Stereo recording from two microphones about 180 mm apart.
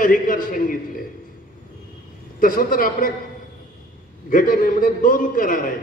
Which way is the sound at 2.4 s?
50° left (ahead or behind).